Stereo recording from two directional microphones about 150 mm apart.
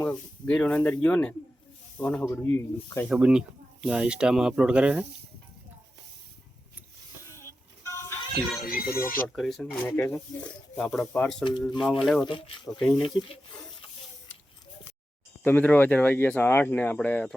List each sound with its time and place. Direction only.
0.1 s speech: 5° left (ahead or behind)
3.1 s speech: 5° right (ahead or behind)
7.9 s a sound: 20° left (ahead or behind)
8.6 s speech: 75° left (ahead or behind)
9.2 s speech: centre (ahead or behind)
9.8 s speech: 15° left (ahead or behind)
12.2 s speech: 30° left (ahead or behind)
12.8 s speech: centre (ahead or behind)
15.4 s speech: 10° left (ahead or behind)